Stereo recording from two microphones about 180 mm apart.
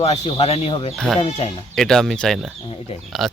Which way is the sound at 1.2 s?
30° left (ahead or behind).